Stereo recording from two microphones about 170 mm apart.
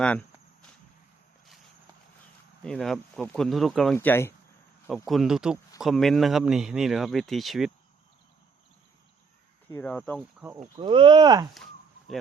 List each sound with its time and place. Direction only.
0.0 s speech: 5° left (ahead or behind)
2.6 s a man's voice: 5° left (ahead or behind)
3.9 s speech: 15° left (ahead or behind)
5.0 s a man's voice: centre (ahead or behind)
9.6 s speech: 10° left (ahead or behind)
10.2 s speech: 10° right (ahead or behind)
10.8 s speech: 30° right (ahead or behind)